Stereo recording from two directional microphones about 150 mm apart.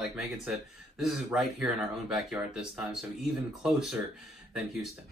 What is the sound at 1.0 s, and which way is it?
Speech, 5° right (ahead or behind).